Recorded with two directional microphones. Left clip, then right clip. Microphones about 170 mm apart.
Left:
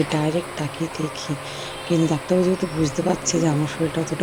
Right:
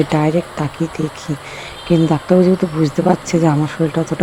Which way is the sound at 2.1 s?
25° right (ahead or behind).